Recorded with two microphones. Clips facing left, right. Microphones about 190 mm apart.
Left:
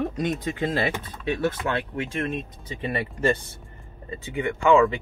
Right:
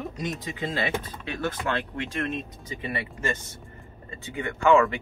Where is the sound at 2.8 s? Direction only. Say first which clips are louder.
Left 7 dB; 35° left (ahead or behind).